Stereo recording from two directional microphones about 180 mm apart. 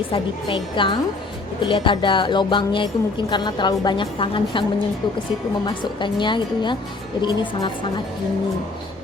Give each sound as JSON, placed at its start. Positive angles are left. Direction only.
{"t": 0.1, "sound": "a woman's voice", "side_deg": 25}
{"t": 5.6, "sound": "a woman's voice", "side_deg": 25}